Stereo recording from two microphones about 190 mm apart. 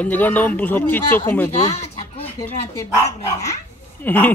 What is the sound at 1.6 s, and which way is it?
Chicken, 30° left (ahead or behind).